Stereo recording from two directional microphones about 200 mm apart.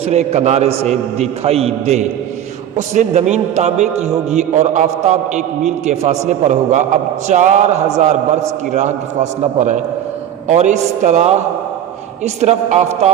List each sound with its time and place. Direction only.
0.0 s a man's voice: 35° right (ahead or behind)